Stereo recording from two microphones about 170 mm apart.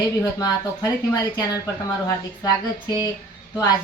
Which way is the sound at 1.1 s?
20° left (ahead or behind).